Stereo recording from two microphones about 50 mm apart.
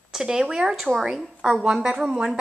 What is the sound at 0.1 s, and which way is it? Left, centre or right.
Speech, centre.